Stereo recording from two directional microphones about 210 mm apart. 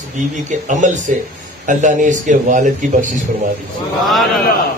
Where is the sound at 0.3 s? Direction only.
35° right (ahead or behind).